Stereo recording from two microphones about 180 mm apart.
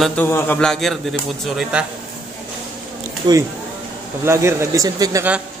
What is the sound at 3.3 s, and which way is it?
Speech, 25° right (ahead or behind).